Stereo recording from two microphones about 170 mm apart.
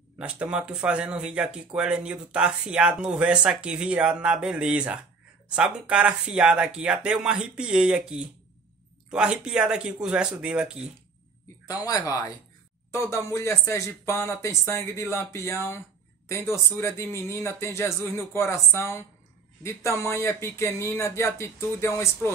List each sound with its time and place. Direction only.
0.2 s speech: 5° right (ahead or behind)
11.6 s speech: 20° left (ahead or behind)